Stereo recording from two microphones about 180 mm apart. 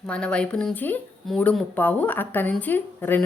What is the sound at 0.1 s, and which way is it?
A woman's voice, 5° left (ahead or behind).